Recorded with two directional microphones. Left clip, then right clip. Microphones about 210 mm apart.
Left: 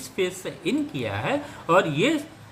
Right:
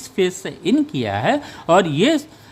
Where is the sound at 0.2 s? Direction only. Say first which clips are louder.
Right 7 dB; 55° right (ahead or behind).